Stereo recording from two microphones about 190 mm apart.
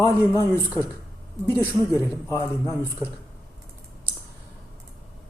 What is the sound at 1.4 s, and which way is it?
A man's voice, 15° left (ahead or behind).